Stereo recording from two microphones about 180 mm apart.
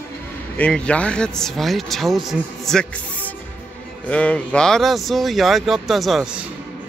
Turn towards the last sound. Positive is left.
turn(degrees=0)  # may be behind; listen again after turning